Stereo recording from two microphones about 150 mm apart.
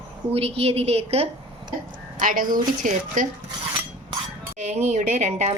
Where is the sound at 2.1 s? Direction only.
65° right (ahead or behind).